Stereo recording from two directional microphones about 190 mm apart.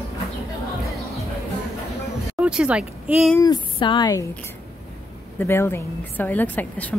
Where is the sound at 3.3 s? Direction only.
20° left (ahead or behind).